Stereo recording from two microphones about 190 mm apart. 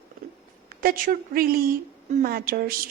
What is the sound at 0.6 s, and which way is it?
A woman's voice, 45° right (ahead or behind).